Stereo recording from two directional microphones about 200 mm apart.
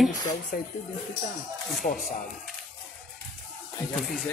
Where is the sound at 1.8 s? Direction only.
35° left (ahead or behind).